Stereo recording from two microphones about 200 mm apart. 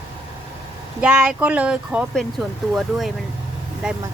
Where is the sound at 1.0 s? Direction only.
5° right (ahead or behind).